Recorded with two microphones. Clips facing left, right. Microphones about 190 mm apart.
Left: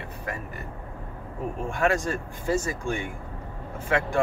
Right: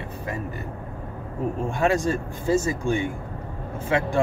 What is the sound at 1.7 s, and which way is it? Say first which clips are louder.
Speech: right 2 dB; 25° right (ahead or behind).